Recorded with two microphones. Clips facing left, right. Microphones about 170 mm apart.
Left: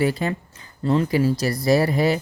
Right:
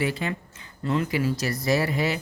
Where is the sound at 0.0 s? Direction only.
40° left (ahead or behind).